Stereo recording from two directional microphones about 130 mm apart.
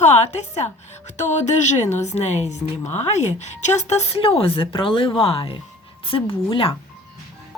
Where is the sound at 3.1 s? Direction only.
60° left (ahead or behind); by 6.7 s 45° left (ahead or behind).